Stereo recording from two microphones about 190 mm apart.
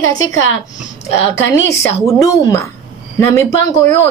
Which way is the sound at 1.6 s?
15° left (ahead or behind).